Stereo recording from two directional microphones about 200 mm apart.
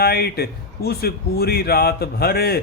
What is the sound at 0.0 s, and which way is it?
A man's voice, 50° left (ahead or behind).